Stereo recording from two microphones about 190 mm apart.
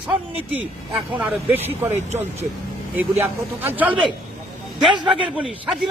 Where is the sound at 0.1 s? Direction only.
5° right (ahead or behind).